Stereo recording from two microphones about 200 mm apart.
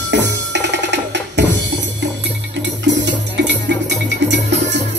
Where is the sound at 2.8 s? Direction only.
60° right (ahead or behind).